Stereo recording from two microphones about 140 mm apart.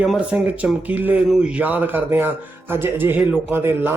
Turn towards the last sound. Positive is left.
turn(degrees=-15)  # may be behind; listen again after turning